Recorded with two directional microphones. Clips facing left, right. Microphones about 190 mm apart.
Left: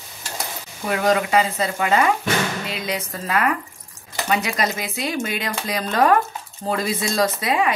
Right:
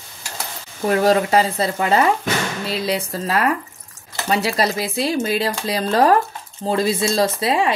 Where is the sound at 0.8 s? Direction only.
35° right (ahead or behind).